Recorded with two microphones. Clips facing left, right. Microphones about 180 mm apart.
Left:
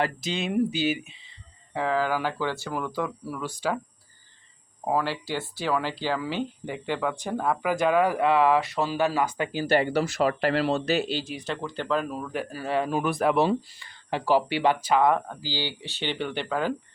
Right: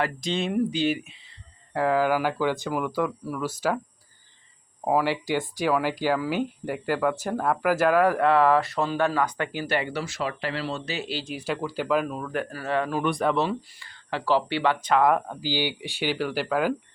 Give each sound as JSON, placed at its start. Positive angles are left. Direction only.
{"t": 0.2, "sound": "speech", "side_deg": 5}
{"t": 1.7, "sound": "speech", "side_deg": -10}
{"t": 4.9, "sound": "speech", "side_deg": -10}
{"t": 9.6, "sound": "speech", "side_deg": 35}
{"t": 10.2, "sound": "speech", "side_deg": 50}
{"t": 11.3, "sound": "speech", "side_deg": -10}
{"t": 12.5, "sound": "speech", "side_deg": 15}
{"t": 13.5, "sound": "speech", "side_deg": 20}
{"t": 15.0, "sound": "speech", "side_deg": -5}